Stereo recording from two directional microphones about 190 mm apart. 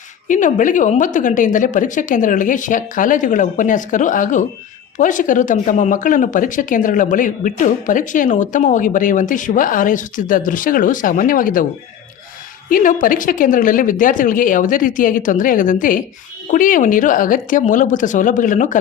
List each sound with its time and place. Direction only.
0.3 s speech: 40° left (ahead or behind)
12.6 s speech: 45° left (ahead or behind)